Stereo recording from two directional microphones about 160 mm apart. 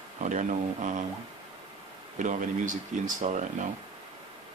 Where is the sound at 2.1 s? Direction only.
55° right (ahead or behind).